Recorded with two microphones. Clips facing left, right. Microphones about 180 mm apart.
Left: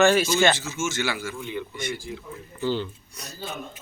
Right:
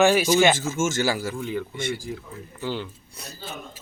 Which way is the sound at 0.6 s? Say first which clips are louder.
Right 4 dB; 45° right (ahead or behind).